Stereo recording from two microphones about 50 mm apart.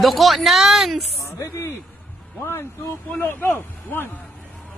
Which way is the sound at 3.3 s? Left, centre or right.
Left.